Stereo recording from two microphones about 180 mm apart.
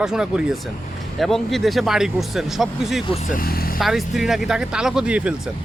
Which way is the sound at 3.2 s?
50° left (ahead or behind).